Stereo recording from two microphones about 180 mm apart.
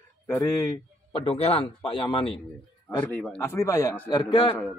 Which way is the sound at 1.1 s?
30° left (ahead or behind).